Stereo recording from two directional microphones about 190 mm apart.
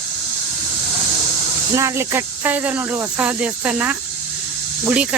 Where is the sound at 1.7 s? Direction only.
15° right (ahead or behind).